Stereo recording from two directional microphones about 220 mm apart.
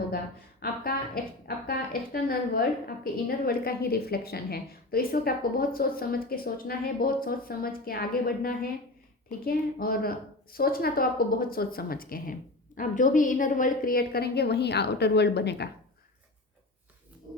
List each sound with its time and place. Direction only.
0.6 s a woman's voice: 45° left (ahead or behind)